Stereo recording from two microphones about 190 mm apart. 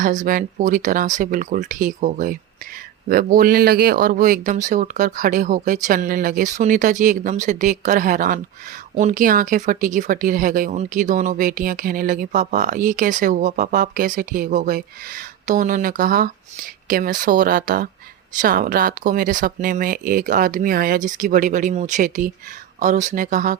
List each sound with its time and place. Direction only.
0.0 s speech: 45° right (ahead or behind)